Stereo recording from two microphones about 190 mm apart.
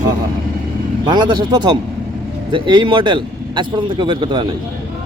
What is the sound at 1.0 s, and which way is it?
Speech, 20° right (ahead or behind).